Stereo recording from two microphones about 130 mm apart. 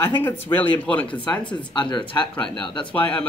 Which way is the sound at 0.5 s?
10° left (ahead or behind).